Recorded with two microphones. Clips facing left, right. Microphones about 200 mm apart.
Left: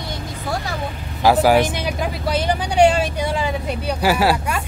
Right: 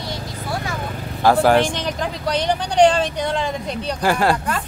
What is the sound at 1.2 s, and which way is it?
Speech, 5° left (ahead or behind).